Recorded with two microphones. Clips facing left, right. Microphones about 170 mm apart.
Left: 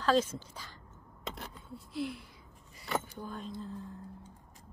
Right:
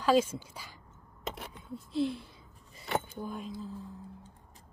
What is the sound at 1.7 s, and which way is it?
Speech, 25° right (ahead or behind).